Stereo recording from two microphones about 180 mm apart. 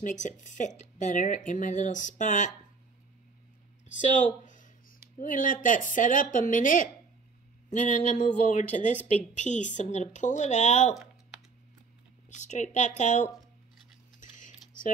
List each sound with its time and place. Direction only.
0.0 s speech: 45° left (ahead or behind)
4.1 s a woman's voice: 45° left (ahead or behind)
12.3 s a woman's voice: 40° left (ahead or behind)
14.2 s tick-tock: 45° left (ahead or behind)